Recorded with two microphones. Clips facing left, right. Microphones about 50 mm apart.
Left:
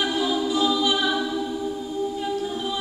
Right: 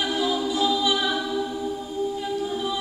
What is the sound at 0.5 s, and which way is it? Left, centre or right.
Choir, centre.